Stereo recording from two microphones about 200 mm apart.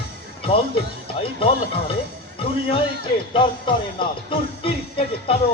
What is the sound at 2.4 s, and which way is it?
Speech, 30° left (ahead or behind).